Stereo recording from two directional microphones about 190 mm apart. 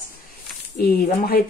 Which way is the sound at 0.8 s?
50° left (ahead or behind).